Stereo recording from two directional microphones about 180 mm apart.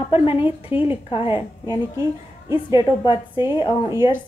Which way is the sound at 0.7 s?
10° right (ahead or behind).